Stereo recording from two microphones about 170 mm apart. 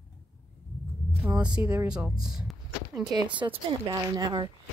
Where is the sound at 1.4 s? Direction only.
5° right (ahead or behind).